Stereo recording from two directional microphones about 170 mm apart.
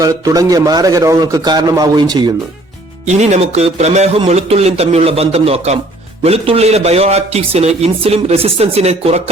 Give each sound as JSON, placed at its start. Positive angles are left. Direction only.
{"t": 0.0, "sound": "a man's voice", "side_deg": -20}
{"t": 3.1, "sound": "a man's voice", "side_deg": -40}